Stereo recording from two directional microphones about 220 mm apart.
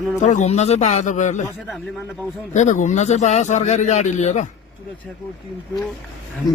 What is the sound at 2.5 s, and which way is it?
A man's voice, 35° left (ahead or behind).